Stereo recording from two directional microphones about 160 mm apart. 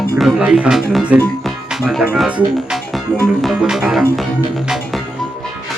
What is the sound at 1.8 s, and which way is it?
Speech, 5° right (ahead or behind).